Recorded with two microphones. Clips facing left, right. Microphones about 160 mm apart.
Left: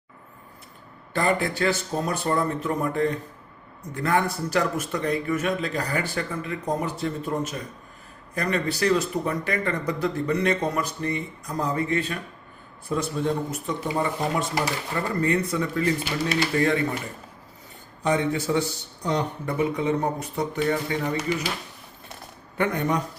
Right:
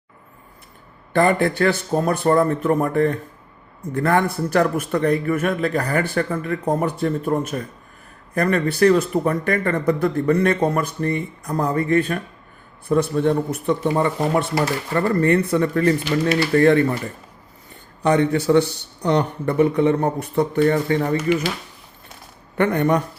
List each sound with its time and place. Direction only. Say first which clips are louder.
1.1 s a man's voice: right 7 dB; 55° right (ahead or behind)
18.0 s a man's voice: right 6 dB; 65° right (ahead or behind)
22.5 s a man's voice: right 6 dB; 60° right (ahead or behind)